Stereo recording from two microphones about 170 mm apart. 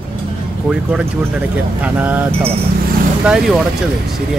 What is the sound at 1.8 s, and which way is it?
Speech, 10° right (ahead or behind).